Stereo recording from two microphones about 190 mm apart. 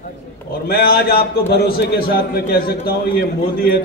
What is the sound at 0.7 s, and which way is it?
A man's voice, 55° left (ahead or behind).